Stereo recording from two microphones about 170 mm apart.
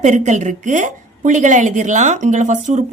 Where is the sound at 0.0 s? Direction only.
45° right (ahead or behind).